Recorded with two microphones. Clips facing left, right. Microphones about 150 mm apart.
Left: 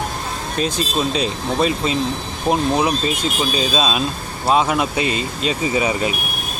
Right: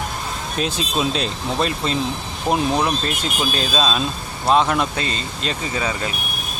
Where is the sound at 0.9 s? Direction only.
Centre (ahead or behind).